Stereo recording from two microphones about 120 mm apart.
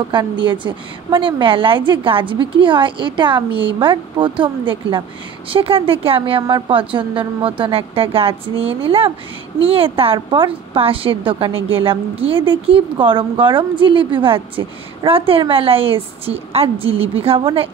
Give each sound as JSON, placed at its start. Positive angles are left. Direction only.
{"t": 0.1, "sound": "a woman's voice", "side_deg": -40}